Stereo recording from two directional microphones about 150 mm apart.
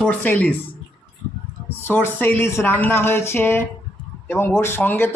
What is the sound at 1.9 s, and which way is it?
A man's voice, 15° left (ahead or behind).